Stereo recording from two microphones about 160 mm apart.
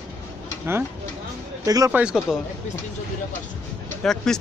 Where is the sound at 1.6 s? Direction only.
20° right (ahead or behind).